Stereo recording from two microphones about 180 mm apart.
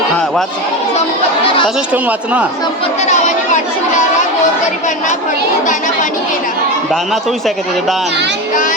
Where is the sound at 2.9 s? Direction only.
40° left (ahead or behind).